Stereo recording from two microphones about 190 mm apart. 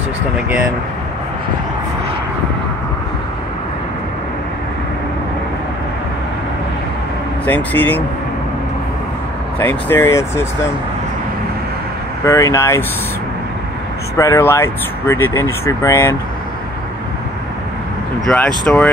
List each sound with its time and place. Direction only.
7.4 s speech: 10° left (ahead or behind)
9.6 s speech: 10° left (ahead or behind)
12.3 s speech: 15° left (ahead or behind)
14.1 s speech: 15° left (ahead or behind)
18.2 s speech: 5° left (ahead or behind)